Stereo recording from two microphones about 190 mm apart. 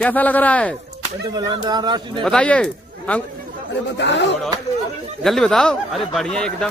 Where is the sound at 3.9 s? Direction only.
70° left (ahead or behind).